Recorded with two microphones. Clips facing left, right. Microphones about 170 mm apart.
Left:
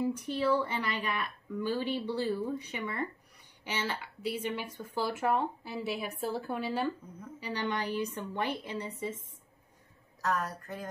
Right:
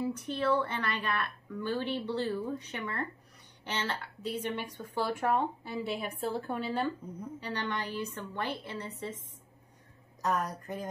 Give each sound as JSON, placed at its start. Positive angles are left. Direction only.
{"t": 0.0, "sound": "speech", "side_deg": 10}
{"t": 10.2, "sound": "a woman's voice", "side_deg": -20}